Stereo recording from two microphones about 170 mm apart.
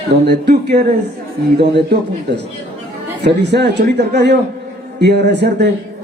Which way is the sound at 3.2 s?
80° right.